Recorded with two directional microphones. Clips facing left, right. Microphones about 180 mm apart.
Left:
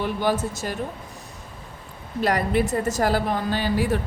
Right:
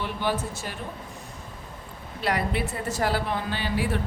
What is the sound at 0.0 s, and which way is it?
Speech, 45° left (ahead or behind).